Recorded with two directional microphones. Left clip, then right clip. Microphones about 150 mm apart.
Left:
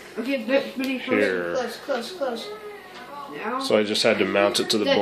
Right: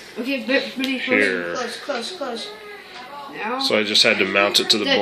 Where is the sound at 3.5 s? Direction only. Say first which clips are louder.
Right 3 dB; 10° left (ahead or behind).